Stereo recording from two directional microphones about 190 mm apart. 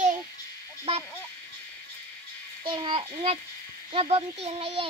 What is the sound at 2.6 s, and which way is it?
A child's voice, 25° right (ahead or behind).